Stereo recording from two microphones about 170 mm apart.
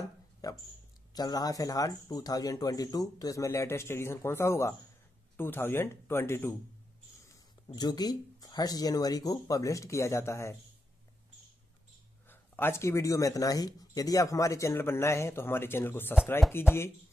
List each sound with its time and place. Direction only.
0.4 s a sound: 20° left (ahead or behind)
1.1 s speech: 25° left (ahead or behind)
7.7 s speech: 25° left (ahead or behind)
12.3 s speech: 15° left (ahead or behind)